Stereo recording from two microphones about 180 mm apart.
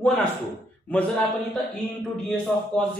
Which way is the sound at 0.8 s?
5° left (ahead or behind).